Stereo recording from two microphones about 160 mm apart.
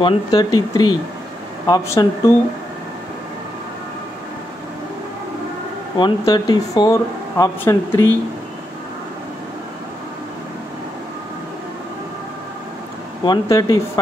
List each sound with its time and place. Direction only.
0.0 s speech: 25° left (ahead or behind)
5.9 s speech: 30° left (ahead or behind)
13.2 s speech: 25° left (ahead or behind)